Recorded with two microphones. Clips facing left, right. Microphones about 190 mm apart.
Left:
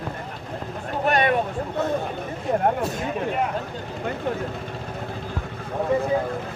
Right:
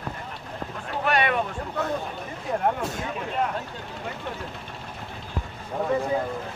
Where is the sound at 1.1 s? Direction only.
45° left (ahead or behind).